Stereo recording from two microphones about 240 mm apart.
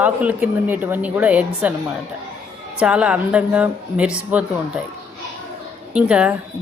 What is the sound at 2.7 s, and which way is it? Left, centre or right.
A woman's voice, centre.